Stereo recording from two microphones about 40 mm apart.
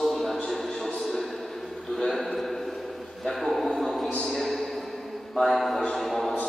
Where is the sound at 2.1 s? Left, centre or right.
Centre.